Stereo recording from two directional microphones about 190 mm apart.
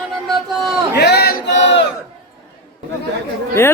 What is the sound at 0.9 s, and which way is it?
Chant, 60° left (ahead or behind).